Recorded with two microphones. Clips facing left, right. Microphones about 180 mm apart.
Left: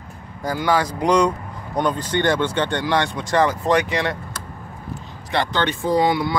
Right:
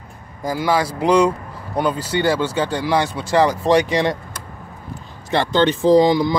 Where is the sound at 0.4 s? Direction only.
10° right (ahead or behind).